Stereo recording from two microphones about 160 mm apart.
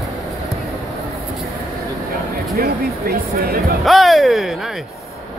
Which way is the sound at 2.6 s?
75° right (ahead or behind).